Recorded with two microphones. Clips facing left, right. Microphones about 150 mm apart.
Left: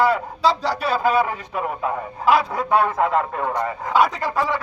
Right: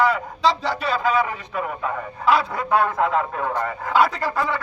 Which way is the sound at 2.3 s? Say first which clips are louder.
Left 2 dB; 5° left (ahead or behind).